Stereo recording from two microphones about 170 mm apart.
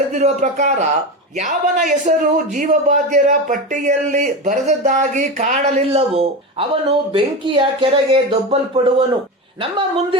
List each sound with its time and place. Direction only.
0.1 s a man's voice: 45° right (ahead or behind)